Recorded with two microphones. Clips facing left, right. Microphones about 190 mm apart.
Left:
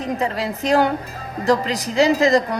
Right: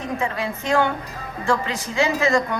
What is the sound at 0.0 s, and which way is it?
A woman's voice, 35° left (ahead or behind).